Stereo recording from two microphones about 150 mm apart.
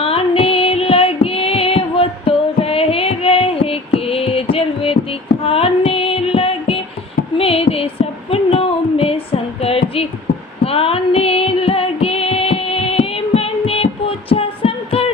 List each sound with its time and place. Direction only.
0.0 s female singing: 40° left (ahead or behind)
5.4 s child singing: 40° left (ahead or behind)
7.3 s a sound: 40° left (ahead or behind)
10.6 s music: 40° left (ahead or behind)
14.3 s heart murmur: 40° left (ahead or behind)